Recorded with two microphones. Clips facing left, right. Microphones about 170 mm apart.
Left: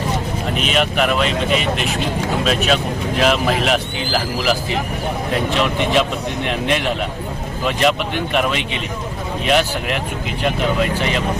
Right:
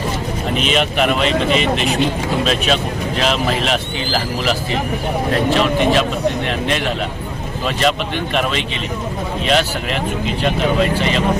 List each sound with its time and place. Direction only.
0.7 s speech: centre (ahead or behind)